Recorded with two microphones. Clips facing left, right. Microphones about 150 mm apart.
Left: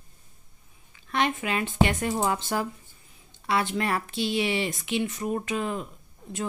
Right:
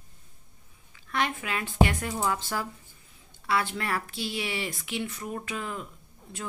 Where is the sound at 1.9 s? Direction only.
25° left (ahead or behind).